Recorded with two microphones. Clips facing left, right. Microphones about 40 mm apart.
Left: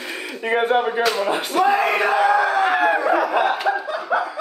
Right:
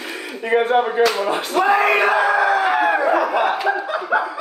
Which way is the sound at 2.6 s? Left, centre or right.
Centre.